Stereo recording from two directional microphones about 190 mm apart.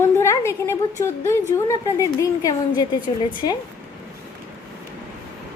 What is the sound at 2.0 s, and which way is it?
Speech, 15° left (ahead or behind).